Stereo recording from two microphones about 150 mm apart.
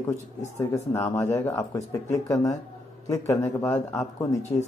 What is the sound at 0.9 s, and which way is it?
A man's voice, 20° left (ahead or behind).